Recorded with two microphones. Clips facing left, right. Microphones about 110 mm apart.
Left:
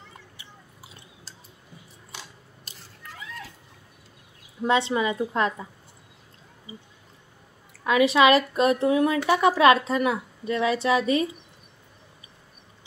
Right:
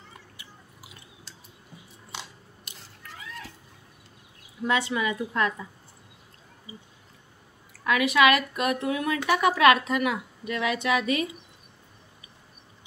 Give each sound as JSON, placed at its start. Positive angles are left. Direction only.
{"t": 0.4, "sound": "chewing", "side_deg": 30}
{"t": 2.7, "sound": "a sound", "side_deg": 35}
{"t": 4.6, "sound": "a woman's voice", "side_deg": 25}
{"t": 7.8, "sound": "a woman's voice", "side_deg": 25}